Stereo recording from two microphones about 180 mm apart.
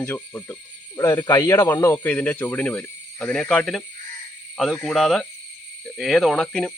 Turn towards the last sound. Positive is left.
turn(degrees=0)  # may be behind; listen again after turning